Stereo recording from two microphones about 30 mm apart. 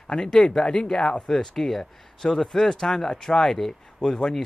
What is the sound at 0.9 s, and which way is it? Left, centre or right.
Speech, left.